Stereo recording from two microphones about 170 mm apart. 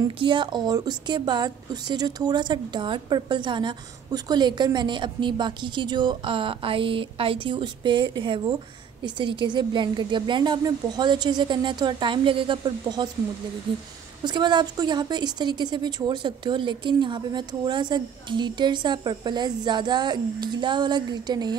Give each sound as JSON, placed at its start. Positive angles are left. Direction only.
{"t": 0.2, "sound": "a woman's voice", "side_deg": -25}
{"t": 14.2, "sound": "a woman's voice", "side_deg": -25}